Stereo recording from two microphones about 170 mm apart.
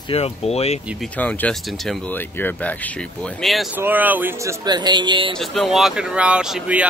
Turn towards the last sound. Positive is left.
turn(degrees=-5)  # may be behind; listen again after turning